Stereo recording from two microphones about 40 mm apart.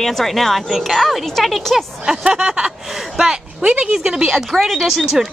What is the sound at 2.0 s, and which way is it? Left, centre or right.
A woman's voice, centre.